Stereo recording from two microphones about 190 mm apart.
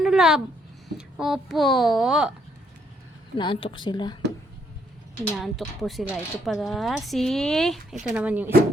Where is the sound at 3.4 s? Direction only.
25° left (ahead or behind).